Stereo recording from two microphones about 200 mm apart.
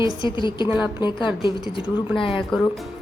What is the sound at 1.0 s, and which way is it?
A woman's voice, 25° left (ahead or behind).